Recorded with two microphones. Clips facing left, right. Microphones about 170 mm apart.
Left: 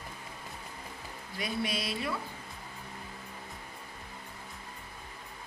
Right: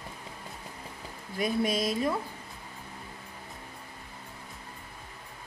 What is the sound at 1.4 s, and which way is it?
Speech, 45° right (ahead or behind).